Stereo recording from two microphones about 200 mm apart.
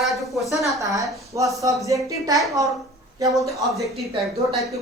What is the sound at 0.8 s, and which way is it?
A woman's voice, 15° right (ahead or behind).